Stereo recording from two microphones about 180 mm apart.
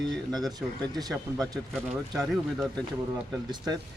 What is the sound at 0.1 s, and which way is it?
Speech, centre (ahead or behind).